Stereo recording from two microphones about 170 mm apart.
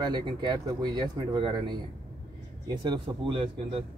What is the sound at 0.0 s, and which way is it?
A man's voice, 25° right (ahead or behind).